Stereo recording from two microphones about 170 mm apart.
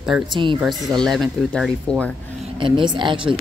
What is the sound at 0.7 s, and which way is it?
Speech, centre (ahead or behind).